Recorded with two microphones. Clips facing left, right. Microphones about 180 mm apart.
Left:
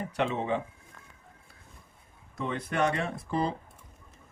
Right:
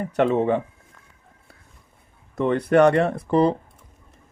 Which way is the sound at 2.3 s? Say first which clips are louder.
Right 14 dB; 60° right (ahead or behind).